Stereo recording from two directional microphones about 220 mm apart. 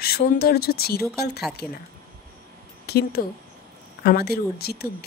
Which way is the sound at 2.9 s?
45° left (ahead or behind).